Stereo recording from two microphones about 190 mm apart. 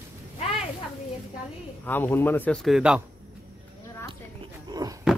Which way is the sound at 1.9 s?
10° left (ahead or behind).